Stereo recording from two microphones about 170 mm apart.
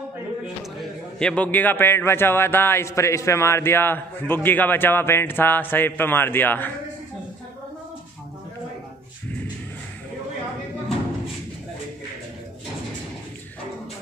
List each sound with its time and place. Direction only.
1.2 s speech: 10° left (ahead or behind)